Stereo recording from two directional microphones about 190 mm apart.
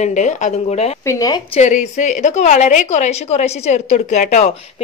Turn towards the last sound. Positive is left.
turn(degrees=35)  # may be behind; listen again after turning